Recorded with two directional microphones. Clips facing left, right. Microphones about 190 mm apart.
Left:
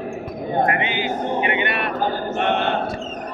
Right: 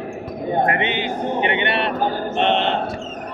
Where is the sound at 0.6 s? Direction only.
25° right (ahead or behind).